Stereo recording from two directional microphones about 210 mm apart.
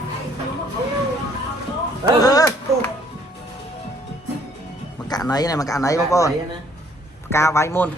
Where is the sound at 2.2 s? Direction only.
15° left (ahead or behind).